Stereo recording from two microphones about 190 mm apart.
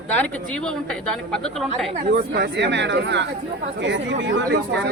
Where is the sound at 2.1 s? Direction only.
55° right (ahead or behind).